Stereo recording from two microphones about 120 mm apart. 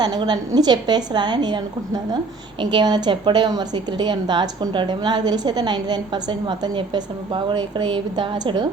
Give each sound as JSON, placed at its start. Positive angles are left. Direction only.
{"t": 0.0, "sound": "a woman's voice", "side_deg": -35}